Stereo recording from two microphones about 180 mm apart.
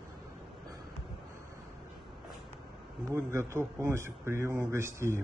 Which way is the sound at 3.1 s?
15° right (ahead or behind).